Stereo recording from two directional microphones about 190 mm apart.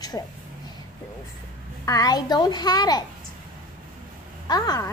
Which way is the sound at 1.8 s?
20° left (ahead or behind).